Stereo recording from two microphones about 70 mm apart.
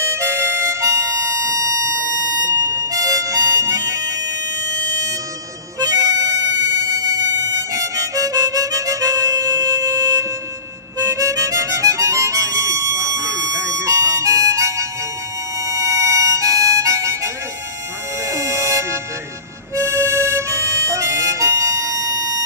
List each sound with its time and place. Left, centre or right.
0.0 s harmonica: right
5.8 s harmonica: right
6.9 s a sound: right
7.7 s harmonica: right
18.3 s music: right
19.7 s harmonica: right